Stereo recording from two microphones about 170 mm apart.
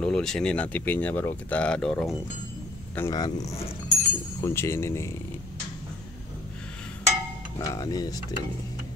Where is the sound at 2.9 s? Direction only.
20° left (ahead or behind).